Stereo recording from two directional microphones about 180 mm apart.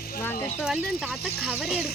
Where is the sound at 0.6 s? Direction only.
5° right (ahead or behind).